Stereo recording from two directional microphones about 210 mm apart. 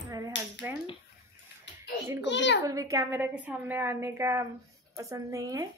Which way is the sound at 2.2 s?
55° left (ahead or behind).